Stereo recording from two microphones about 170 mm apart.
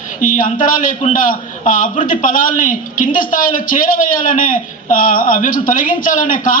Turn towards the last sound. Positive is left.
turn(degrees=50)  # may be behind; listen again after turning